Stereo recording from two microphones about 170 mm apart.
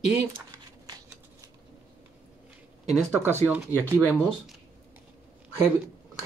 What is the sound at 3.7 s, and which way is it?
Speech, 15° left (ahead or behind).